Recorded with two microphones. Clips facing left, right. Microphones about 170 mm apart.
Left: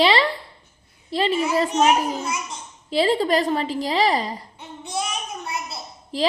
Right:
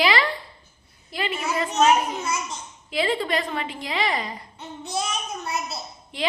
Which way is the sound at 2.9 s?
35° left (ahead or behind).